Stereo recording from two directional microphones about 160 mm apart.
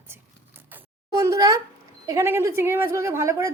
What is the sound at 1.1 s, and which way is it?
A woman's voice, 20° right (ahead or behind).